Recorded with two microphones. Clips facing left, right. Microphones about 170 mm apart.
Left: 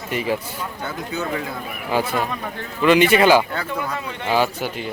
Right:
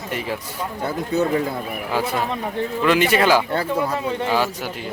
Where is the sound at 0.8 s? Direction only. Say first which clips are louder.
Right 8 dB; 30° right (ahead or behind).